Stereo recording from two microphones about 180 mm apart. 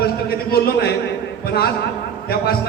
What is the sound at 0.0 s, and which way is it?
Speech, 60° left (ahead or behind).